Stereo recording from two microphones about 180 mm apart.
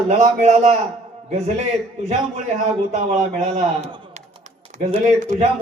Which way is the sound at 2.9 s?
40° right (ahead or behind).